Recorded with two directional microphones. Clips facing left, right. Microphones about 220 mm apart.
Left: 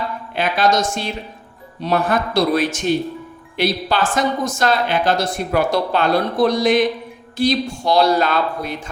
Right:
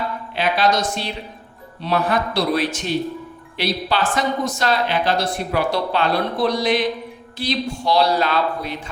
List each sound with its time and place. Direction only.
0.3 s speech: 45° left (ahead or behind)